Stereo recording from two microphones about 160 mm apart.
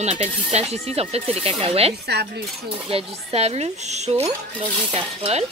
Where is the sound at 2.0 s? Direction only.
90° right.